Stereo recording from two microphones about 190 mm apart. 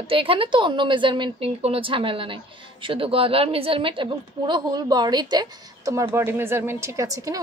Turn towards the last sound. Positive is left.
turn(degrees=-15)  # may be behind; listen again after turning